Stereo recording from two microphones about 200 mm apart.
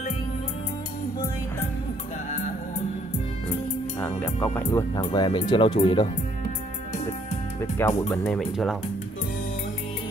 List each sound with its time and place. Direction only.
4.0 s music: 10° left (ahead or behind)
5.1 s speech: 20° left (ahead or behind)
8.1 s speech: 10° left (ahead or behind)